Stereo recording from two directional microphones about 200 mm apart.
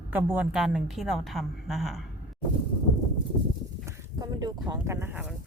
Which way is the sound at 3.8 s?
20° right (ahead or behind).